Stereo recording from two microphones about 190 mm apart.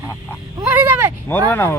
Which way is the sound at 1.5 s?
10° left (ahead or behind).